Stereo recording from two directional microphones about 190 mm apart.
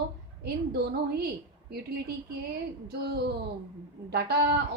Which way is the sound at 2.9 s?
55° right (ahead or behind).